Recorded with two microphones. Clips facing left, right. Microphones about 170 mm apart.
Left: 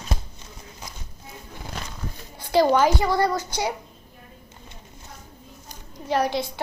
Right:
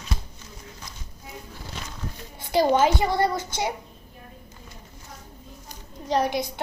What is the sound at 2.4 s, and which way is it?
A child's voice, 20° right (ahead or behind).